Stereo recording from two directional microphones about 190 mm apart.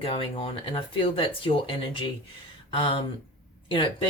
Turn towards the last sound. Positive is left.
turn(degrees=25)  # may be behind; listen again after turning